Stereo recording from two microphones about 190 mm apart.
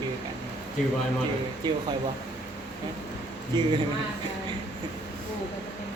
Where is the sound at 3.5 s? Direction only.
20° right (ahead or behind).